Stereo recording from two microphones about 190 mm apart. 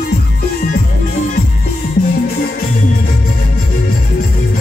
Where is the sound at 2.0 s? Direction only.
45° left (ahead or behind).